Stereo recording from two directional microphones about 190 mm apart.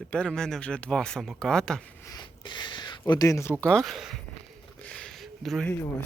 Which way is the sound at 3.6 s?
5° left (ahead or behind).